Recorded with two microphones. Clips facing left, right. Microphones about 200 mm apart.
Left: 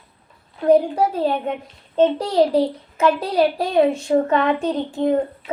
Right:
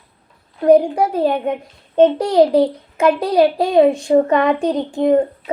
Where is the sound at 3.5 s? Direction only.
15° right (ahead or behind).